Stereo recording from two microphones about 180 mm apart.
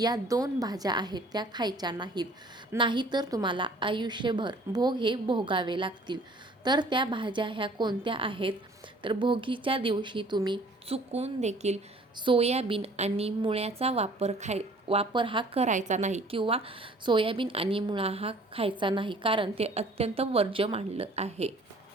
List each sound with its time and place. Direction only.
0.0 s a woman's voice: 20° right (ahead or behind); by 21.5 s 35° right (ahead or behind)